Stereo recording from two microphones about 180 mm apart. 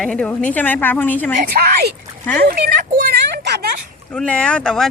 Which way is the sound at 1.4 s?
60° right (ahead or behind).